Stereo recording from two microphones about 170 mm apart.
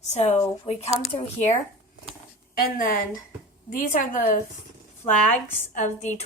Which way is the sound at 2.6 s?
60° left (ahead or behind).